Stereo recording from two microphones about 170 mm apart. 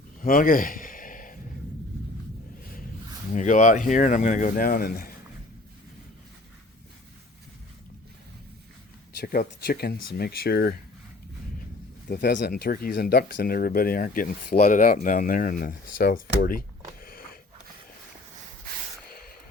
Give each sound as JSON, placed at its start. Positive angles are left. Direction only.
{"t": 0.2, "sound": "a sound", "side_deg": 55}
{"t": 3.3, "sound": "speech", "side_deg": 45}
{"t": 9.2, "sound": "speech", "side_deg": 60}
{"t": 12.0, "sound": "speech", "side_deg": 65}
{"t": 14.5, "sound": "speech", "side_deg": 45}
{"t": 17.0, "sound": "a sound", "side_deg": 60}